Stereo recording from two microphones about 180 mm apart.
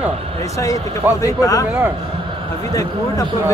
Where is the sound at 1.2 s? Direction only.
20° left (ahead or behind).